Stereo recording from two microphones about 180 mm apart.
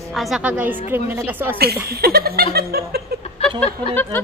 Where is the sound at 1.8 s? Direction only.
60° right (ahead or behind).